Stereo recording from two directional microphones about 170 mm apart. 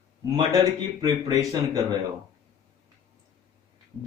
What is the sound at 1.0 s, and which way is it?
Speech, 20° right (ahead or behind).